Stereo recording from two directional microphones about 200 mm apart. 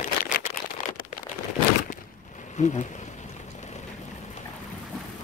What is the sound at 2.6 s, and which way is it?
Bee, 35° left (ahead or behind).